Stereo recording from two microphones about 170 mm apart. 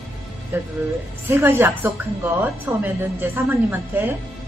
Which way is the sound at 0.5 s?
10° right (ahead or behind).